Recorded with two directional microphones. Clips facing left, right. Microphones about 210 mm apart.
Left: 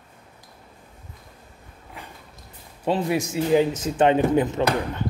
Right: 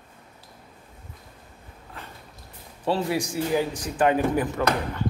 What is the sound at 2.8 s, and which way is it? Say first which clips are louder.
A man's voice: left 2 dB; 20° left (ahead or behind).